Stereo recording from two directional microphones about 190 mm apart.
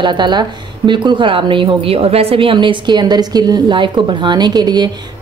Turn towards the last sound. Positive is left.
turn(degrees=-20)  # may be behind; listen again after turning